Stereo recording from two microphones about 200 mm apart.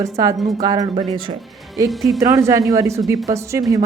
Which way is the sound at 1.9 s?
Centre (ahead or behind).